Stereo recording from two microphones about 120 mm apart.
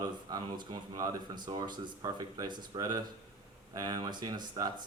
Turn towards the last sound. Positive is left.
turn(degrees=-35)  # may be behind; listen again after turning